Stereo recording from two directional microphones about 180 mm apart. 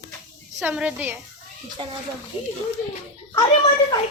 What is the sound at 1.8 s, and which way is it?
Speech, 30° right (ahead or behind).